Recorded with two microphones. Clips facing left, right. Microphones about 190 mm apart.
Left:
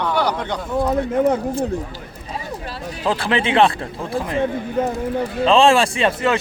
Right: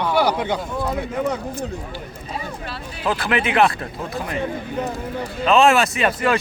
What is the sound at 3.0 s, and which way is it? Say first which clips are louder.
Speech: left 1 dB; 25° left (ahead or behind).